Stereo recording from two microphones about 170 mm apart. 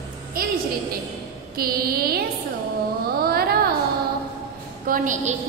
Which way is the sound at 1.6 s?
60° right (ahead or behind).